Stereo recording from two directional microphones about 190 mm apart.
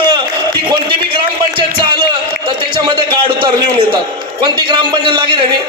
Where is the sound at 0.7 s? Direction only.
25° right (ahead or behind).